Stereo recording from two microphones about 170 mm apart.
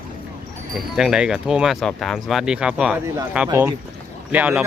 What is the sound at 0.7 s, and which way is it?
Speech, 5° right (ahead or behind).